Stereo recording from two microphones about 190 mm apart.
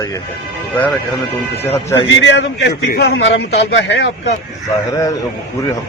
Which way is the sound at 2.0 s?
70° left (ahead or behind).